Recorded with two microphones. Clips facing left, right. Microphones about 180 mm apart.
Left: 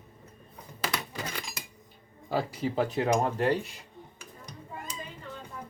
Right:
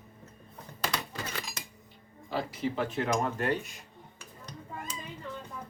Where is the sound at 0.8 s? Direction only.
10° left (ahead or behind).